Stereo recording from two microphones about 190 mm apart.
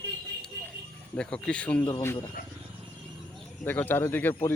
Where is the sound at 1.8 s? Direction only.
15° left (ahead or behind).